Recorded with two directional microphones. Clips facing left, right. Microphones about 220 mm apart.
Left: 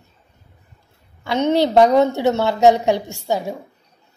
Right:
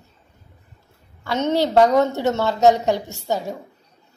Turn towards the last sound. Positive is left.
turn(degrees=10)  # may be behind; listen again after turning